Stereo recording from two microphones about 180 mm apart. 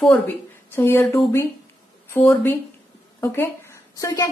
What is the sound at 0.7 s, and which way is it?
A woman's voice, 10° left (ahead or behind).